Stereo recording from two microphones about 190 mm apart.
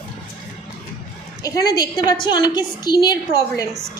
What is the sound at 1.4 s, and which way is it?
A woman's voice, 20° left (ahead or behind).